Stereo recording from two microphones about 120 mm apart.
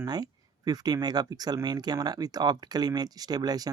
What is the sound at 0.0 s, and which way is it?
Speech, 35° right (ahead or behind).